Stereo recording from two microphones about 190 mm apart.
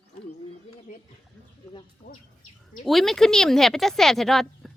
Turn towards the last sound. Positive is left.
turn(degrees=0)  # may be behind; listen again after turning